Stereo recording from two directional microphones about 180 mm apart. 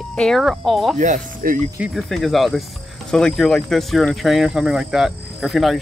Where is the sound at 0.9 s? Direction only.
45° right (ahead or behind).